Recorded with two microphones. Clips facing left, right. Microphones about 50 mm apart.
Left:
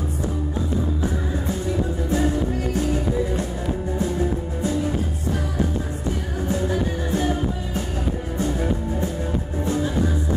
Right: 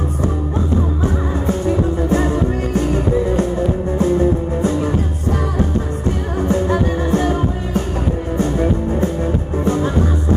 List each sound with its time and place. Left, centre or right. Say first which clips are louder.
2.0 s music: right 5 dB; right
6.4 s music: right 7 dB; right